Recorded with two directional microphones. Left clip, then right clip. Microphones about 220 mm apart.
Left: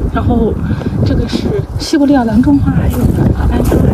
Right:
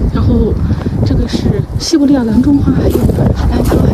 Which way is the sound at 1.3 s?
20° right (ahead or behind).